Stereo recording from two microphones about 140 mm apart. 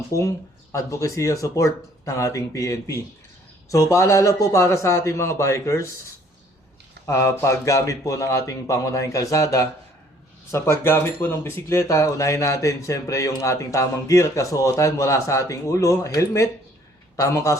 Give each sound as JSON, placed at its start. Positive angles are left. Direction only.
{"t": 0.1, "sound": "speech", "side_deg": 20}
{"t": 7.1, "sound": "speech", "side_deg": 20}